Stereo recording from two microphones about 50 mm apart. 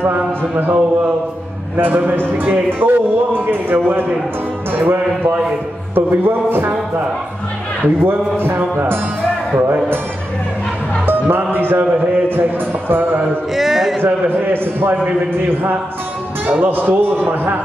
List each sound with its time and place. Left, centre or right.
1.8 s a man's voice: right
8.0 s a man's voice: right
9.6 s a man's voice: right
11.1 s a man's voice: right
13.6 s a sound: centre
14.0 s a man's voice: right